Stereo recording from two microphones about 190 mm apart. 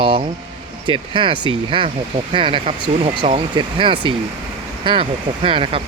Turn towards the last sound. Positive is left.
turn(degrees=-25)  # may be behind; listen again after turning